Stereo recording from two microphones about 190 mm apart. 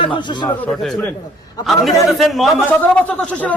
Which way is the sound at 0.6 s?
5° left (ahead or behind).